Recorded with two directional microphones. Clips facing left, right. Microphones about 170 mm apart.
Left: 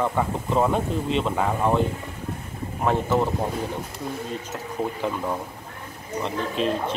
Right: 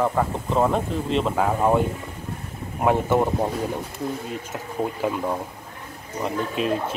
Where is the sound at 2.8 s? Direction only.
10° right (ahead or behind).